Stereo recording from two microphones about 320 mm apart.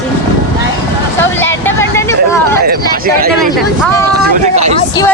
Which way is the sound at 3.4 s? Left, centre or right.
Centre.